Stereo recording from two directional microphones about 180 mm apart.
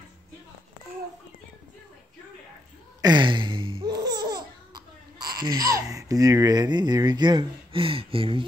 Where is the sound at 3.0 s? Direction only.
25° right (ahead or behind).